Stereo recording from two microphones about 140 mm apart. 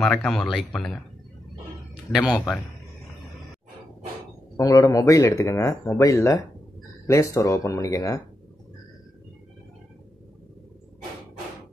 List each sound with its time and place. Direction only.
0.0 s speech: 10° left (ahead or behind)
2.3 s a man's voice: centre (ahead or behind)
4.6 s speech: 25° left (ahead or behind)